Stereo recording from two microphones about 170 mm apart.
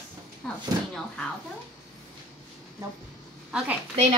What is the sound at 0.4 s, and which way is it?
Speech, centre (ahead or behind).